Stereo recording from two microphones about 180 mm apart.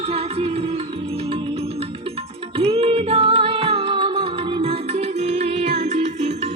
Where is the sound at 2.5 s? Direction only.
30° right (ahead or behind).